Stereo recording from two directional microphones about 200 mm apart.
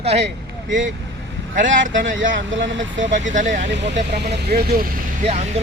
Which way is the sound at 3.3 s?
40° right (ahead or behind).